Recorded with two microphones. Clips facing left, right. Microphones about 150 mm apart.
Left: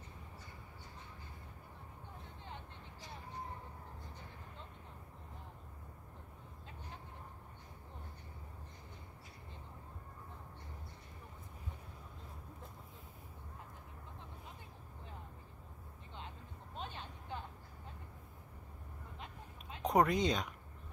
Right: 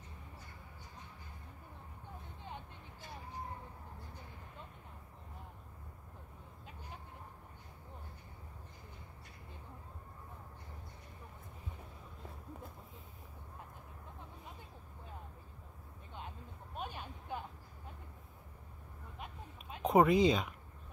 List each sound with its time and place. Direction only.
16.7 s vehicle: 15° right (ahead or behind)
19.1 s a sound: 15° right (ahead or behind)
19.8 s speech: 5° right (ahead or behind)